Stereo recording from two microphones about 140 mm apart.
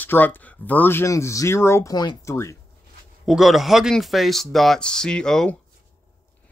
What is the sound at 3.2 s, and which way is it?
Speech, centre (ahead or behind).